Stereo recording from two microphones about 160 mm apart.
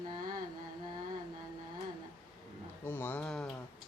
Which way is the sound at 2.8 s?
15° left (ahead or behind).